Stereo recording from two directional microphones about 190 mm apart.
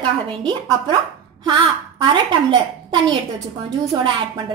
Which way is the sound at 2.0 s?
25° right (ahead or behind).